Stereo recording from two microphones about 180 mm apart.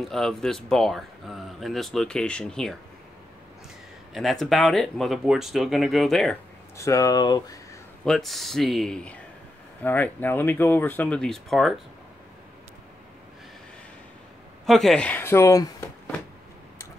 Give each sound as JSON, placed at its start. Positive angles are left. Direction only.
{"t": 0.0, "sound": "speech", "side_deg": 0}
{"t": 4.1, "sound": "speech", "side_deg": 0}
{"t": 6.8, "sound": "speech", "side_deg": 15}
{"t": 8.0, "sound": "speech", "side_deg": 0}
{"t": 14.7, "sound": "speech", "side_deg": 0}